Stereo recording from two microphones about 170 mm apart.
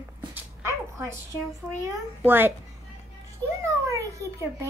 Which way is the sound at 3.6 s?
15° right (ahead or behind).